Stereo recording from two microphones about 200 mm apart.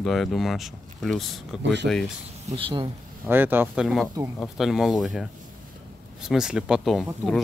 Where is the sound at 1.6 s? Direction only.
60° right (ahead or behind).